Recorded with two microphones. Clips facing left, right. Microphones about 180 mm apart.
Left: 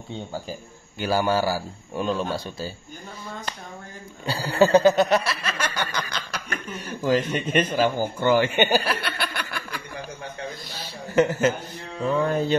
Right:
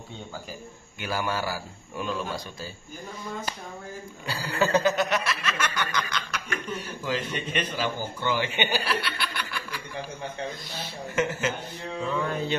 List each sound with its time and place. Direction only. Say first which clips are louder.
0.3 s snicker: left 5 dB; 30° left (ahead or behind)
4.3 s snicker: left 7 dB; 30° left (ahead or behind); by 9.8 s 50° left (ahead or behind)
12.3 s snicker: left 6 dB; 40° left (ahead or behind)